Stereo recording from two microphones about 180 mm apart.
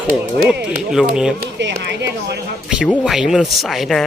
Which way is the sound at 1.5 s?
75° right (ahead or behind).